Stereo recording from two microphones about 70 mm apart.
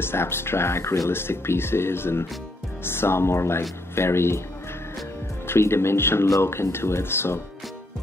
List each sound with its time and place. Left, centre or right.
0.0 s speech: left
5.5 s speech: left